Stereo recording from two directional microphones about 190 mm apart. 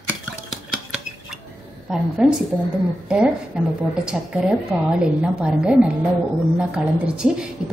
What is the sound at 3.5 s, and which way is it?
A woman's voice, 5° right (ahead or behind).